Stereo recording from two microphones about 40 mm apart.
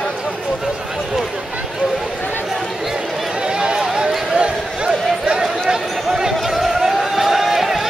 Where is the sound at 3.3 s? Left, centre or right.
Right.